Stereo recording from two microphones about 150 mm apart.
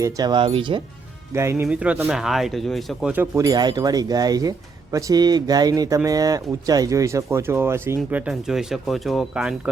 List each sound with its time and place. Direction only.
0.0 s speech: 25° right (ahead or behind)
1.3 s speech: 15° right (ahead or behind); by 3.1 s centre (ahead or behind)
3.1 s speech: 15° right (ahead or behind)
8.1 s speech: 5° right (ahead or behind)